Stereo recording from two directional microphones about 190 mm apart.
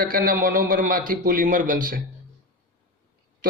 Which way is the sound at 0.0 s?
50° right (ahead or behind).